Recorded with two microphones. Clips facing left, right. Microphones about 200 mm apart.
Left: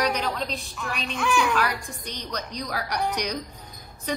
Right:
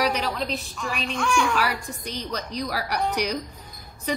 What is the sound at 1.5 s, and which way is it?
A woman's voice, 10° right (ahead or behind).